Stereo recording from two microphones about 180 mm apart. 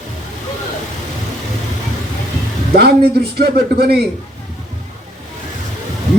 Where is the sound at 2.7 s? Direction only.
60° right (ahead or behind).